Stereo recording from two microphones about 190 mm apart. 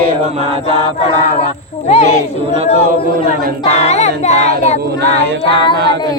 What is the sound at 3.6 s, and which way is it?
Child singing, 35° left (ahead or behind).